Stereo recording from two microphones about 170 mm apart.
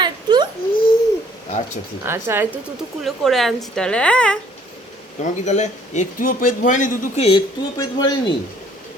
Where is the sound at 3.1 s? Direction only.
Centre (ahead or behind).